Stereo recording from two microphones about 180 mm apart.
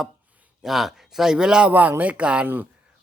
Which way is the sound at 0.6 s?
Centre (ahead or behind).